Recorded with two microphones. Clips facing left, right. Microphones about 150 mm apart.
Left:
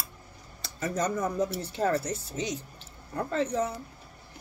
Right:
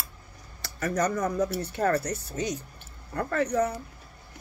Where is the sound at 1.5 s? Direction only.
60° right (ahead or behind).